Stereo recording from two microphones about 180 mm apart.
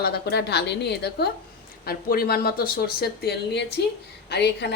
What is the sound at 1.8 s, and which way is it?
A woman's voice, 55° left (ahead or behind).